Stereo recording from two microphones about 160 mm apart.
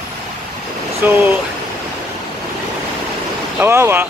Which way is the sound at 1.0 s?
10° right (ahead or behind).